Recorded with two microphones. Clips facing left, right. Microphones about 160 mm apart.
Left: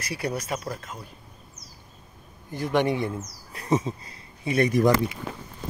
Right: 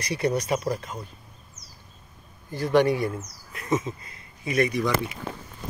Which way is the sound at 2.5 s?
20° left (ahead or behind).